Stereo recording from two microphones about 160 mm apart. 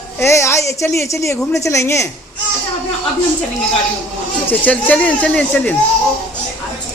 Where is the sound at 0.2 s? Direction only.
15° left (ahead or behind).